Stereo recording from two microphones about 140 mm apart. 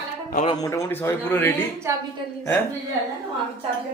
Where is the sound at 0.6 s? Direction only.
20° left (ahead or behind).